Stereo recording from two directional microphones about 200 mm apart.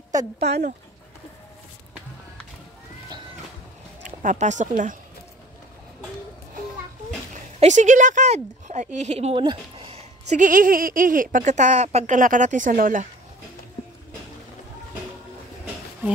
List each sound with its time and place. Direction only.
0.4 s speech: 55° right (ahead or behind)
4.0 s speech: 40° right (ahead or behind)
7.6 s speech: 35° right (ahead or behind)